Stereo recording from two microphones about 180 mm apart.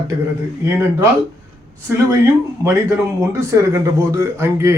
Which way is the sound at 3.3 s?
15° right (ahead or behind).